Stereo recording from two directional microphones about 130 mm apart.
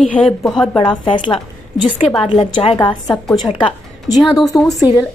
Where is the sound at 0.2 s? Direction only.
15° left (ahead or behind).